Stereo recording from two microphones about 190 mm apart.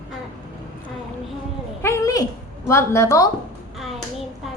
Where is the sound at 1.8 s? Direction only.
15° left (ahead or behind).